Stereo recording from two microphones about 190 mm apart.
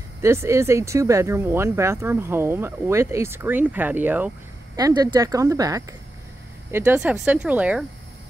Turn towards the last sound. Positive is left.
turn(degrees=-5)  # may be behind; listen again after turning